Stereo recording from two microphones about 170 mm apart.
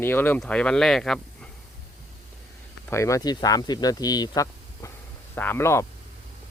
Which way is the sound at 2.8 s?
15° left (ahead or behind).